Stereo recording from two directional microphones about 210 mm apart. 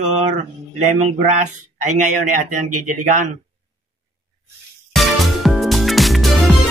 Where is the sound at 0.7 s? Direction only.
35° right (ahead or behind).